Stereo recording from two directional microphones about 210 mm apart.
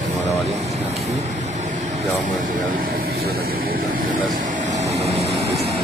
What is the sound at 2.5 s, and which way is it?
Speech, 40° right (ahead or behind).